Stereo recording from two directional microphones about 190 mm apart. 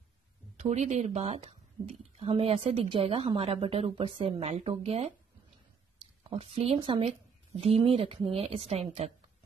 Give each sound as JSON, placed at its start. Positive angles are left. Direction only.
{"t": 0.6, "sound": "speech", "side_deg": -40}
{"t": 6.3, "sound": "speech", "side_deg": -35}